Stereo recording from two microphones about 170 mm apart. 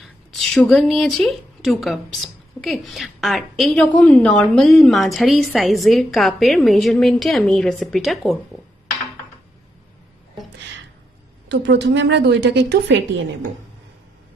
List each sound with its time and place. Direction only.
0.0 s a woman's voice: 5° left (ahead or behind)
11.6 s a woman's voice: 90° right